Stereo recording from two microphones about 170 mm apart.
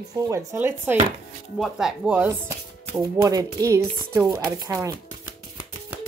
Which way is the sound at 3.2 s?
25° right (ahead or behind).